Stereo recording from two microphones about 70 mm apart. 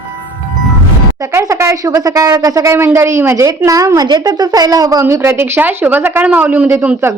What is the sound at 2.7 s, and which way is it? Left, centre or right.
A child's voice, right.